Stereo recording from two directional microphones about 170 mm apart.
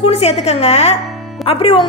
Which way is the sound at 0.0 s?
40° left (ahead or behind).